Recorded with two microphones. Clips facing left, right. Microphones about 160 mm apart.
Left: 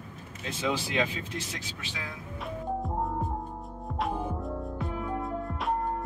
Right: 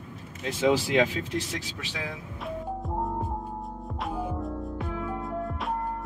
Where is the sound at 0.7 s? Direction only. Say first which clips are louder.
Right 6 dB; 85° right.